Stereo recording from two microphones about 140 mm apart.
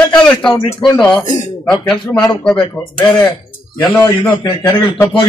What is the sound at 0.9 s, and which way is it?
Speech, 5° left (ahead or behind).